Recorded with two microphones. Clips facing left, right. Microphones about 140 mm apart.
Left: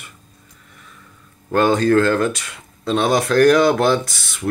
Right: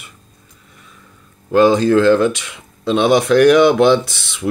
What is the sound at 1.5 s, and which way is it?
Speech, 10° right (ahead or behind).